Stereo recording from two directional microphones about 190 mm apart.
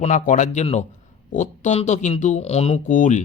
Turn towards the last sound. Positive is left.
turn(degrees=40)  # may be behind; listen again after turning